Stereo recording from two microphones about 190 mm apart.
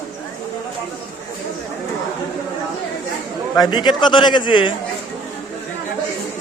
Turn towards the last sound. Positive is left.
turn(degrees=25)  # may be behind; listen again after turning